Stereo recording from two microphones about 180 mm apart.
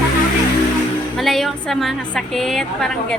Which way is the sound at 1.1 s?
Centre (ahead or behind).